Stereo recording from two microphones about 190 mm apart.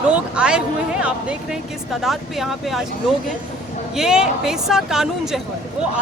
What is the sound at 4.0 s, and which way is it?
Speech, 5° right (ahead or behind).